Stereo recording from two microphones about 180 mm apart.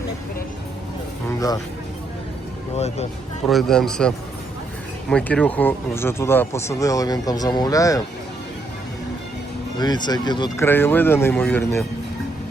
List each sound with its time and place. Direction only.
2.7 s speech: 35° left (ahead or behind)
3.4 s a man's voice: centre (ahead or behind); by 8.0 s 20° left (ahead or behind)
9.7 s speech: 25° left (ahead or behind)
10.7 s speech: 10° left (ahead or behind)